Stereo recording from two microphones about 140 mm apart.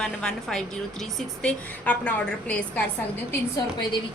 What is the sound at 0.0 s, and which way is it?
A woman's voice, 5° left (ahead or behind).